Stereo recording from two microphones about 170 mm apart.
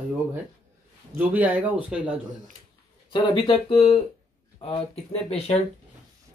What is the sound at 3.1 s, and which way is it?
Speech, 30° left (ahead or behind).